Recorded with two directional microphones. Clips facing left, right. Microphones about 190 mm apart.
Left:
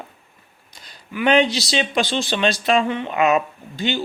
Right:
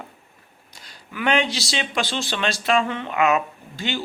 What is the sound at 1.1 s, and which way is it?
Speech, 20° left (ahead or behind).